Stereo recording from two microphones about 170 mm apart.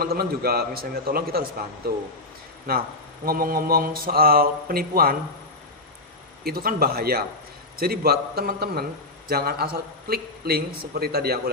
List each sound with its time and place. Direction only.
0.0 s speech: 65° right (ahead or behind)
6.4 s speech: 60° right (ahead or behind)